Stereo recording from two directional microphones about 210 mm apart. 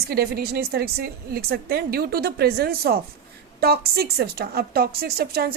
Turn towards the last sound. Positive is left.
turn(degrees=-45)  # may be behind; listen again after turning